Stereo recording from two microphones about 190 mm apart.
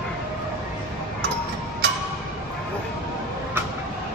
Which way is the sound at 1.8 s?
65° right (ahead or behind).